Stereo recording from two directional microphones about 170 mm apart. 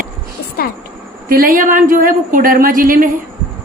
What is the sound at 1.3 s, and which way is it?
A woman's voice, 60° right (ahead or behind).